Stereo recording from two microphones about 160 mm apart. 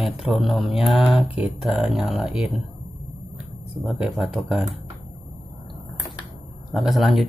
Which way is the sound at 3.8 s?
5° right (ahead or behind).